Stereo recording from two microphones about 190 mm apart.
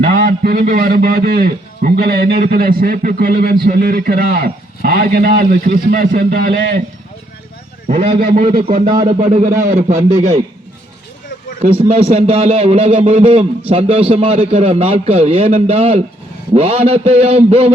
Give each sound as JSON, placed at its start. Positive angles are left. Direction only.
{"t": 0.2, "sound": "a man's voice", "side_deg": -50}
{"t": 8.1, "sound": "a man's voice", "side_deg": -50}
{"t": 9.0, "sound": "a man's voice", "side_deg": -35}
{"t": 11.7, "sound": "a man's voice", "side_deg": -30}